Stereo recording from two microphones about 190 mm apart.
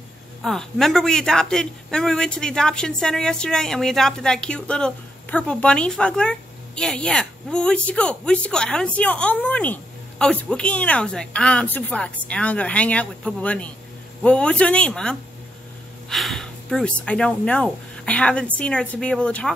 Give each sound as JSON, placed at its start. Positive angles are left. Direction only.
{"t": 0.4, "sound": "a man's voice", "side_deg": 0}